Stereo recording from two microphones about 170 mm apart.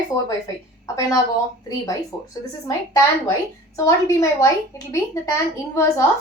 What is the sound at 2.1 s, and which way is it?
A woman's voice, 25° left (ahead or behind).